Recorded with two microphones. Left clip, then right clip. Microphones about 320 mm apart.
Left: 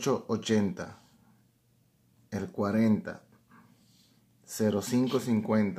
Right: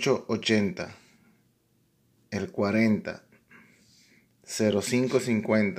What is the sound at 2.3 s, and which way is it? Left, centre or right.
Speech, centre.